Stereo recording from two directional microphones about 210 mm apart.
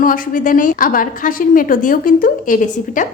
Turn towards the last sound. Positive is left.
turn(degrees=40)  # may be behind; listen again after turning